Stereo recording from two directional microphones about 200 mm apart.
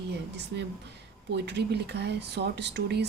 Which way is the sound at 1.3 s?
55° right (ahead or behind).